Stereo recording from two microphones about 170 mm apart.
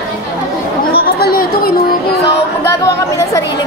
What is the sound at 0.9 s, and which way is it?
Chatter, 65° left (ahead or behind).